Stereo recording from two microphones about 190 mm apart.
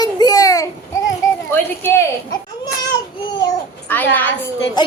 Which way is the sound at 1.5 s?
10° left (ahead or behind).